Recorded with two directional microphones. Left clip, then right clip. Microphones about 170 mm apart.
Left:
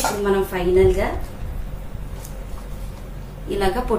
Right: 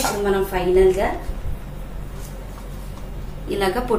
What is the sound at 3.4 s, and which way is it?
Speech, 30° right (ahead or behind).